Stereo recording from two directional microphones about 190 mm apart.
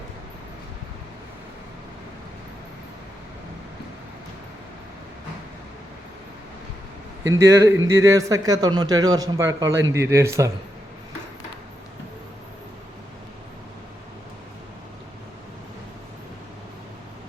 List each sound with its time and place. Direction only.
7.3 s a man's voice: 15° right (ahead or behind)